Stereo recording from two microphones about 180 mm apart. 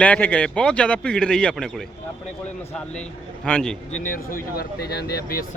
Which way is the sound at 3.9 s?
45° left (ahead or behind).